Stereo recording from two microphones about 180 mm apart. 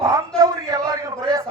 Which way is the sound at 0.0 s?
20° right (ahead or behind).